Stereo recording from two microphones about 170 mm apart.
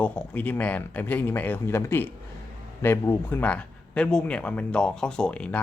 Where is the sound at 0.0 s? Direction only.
10° left (ahead or behind).